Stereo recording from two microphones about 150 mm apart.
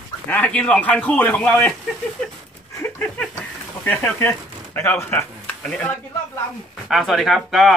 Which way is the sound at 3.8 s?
15° left (ahead or behind).